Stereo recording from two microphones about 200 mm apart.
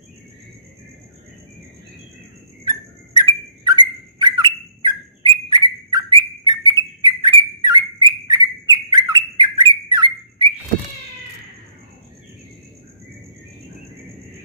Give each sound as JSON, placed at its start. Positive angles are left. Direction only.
{"t": 2.6, "sound": "bird", "side_deg": -20}